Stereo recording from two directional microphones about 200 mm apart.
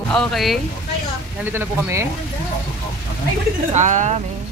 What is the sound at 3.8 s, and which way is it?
Speech, 40° right (ahead or behind).